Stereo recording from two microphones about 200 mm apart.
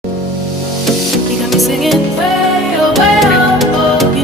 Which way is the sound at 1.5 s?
Centre (ahead or behind).